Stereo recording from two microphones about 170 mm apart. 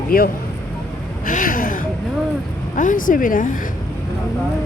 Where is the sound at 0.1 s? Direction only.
60° left (ahead or behind).